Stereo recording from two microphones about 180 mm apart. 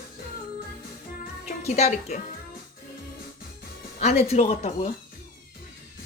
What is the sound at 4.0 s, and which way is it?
Speech, 35° left (ahead or behind).